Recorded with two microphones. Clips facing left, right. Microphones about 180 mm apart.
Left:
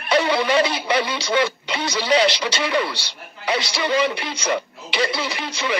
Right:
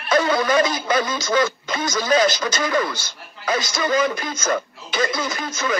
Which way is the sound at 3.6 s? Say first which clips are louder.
Right 1 dB; 30° left (ahead or behind).